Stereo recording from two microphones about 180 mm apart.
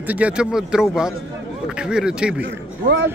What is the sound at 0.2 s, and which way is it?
A man's voice, 5° right (ahead or behind).